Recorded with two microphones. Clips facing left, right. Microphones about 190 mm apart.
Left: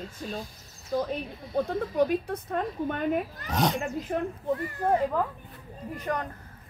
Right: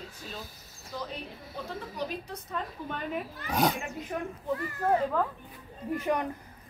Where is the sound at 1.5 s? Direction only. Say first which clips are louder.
Left 13 dB; 55° left (ahead or behind).